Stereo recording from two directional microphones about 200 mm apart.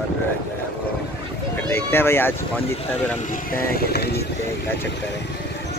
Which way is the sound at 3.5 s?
50° left (ahead or behind).